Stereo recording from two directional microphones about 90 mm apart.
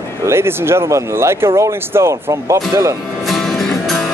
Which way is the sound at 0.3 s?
30° right (ahead or behind).